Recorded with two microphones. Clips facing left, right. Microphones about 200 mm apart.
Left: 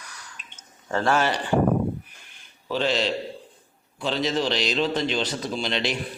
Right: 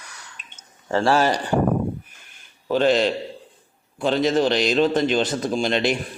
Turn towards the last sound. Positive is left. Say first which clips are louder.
# right 6 dB
turn(degrees=-50)  # may be behind; listen again after turning